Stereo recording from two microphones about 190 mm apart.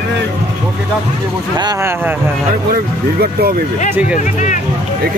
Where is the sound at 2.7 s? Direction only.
55° right (ahead or behind).